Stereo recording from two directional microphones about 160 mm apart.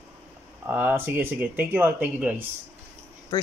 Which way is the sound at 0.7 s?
10° right (ahead or behind).